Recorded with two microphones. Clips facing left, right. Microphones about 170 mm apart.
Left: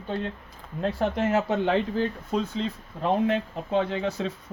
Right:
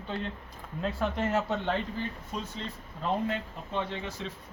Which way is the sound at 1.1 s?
75° left (ahead or behind).